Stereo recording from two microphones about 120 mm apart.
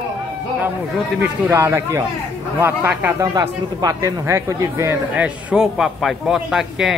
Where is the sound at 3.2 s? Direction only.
30° right (ahead or behind).